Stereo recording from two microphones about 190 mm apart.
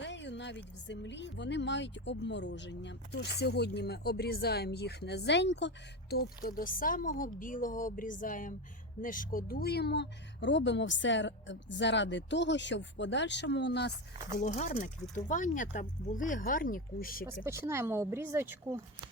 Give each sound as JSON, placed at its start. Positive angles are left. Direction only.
{"t": 0.0, "sound": "speech", "side_deg": 65}
{"t": 14.3, "sound": "speech", "side_deg": 40}
{"t": 17.4, "sound": "speech", "side_deg": -15}